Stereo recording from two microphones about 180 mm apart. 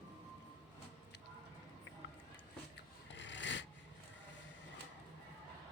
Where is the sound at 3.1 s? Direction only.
85° left.